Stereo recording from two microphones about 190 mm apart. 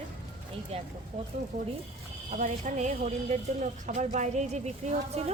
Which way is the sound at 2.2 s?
40° right (ahead or behind).